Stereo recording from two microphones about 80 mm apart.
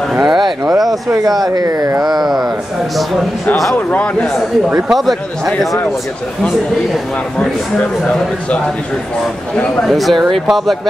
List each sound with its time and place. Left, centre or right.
0.1 s a sound: centre
0.8 s speech: right
2.0 s speech: centre
3.9 s a man's voice: centre
4.8 s speech: centre
9.8 s speech: centre